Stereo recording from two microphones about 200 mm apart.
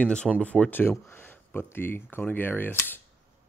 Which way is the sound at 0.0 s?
5° left (ahead or behind).